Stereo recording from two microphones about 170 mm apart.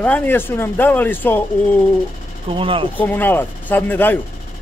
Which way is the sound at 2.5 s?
30° right (ahead or behind).